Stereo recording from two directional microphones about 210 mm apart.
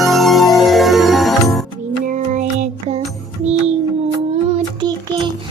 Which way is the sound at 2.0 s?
35° right (ahead or behind).